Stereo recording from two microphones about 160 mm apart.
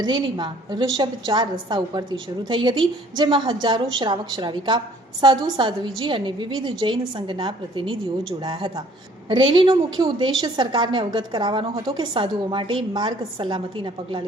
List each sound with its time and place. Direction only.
0.0 s a woman's voice: 30° right (ahead or behind)